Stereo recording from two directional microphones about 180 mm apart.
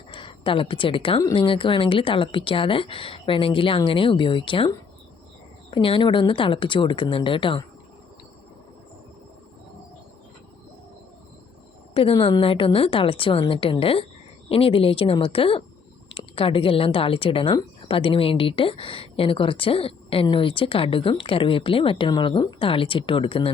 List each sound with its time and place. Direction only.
0.1 s a woman's voice: 30° left (ahead or behind)
5.7 s a woman's voice: 30° left (ahead or behind)
11.9 s a woman's voice: 30° left (ahead or behind)